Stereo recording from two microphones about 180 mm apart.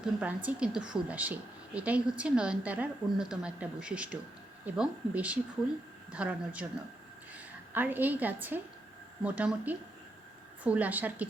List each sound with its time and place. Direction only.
0.0 s a woman's voice: 10° right (ahead or behind)